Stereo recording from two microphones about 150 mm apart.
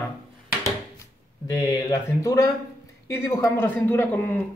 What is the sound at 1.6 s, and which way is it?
Speech, 25° left (ahead or behind).